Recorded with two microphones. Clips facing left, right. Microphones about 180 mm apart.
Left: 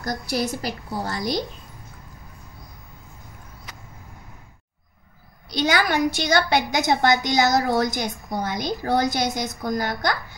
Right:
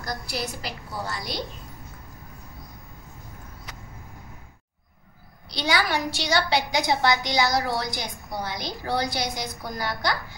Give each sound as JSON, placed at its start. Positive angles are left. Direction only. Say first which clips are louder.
{"t": 0.0, "sound": "a woman's voice", "louder": "left 6 dB", "side_deg": 45}
{"t": 5.5, "sound": "a woman's voice", "louder": "left 4 dB", "side_deg": 50}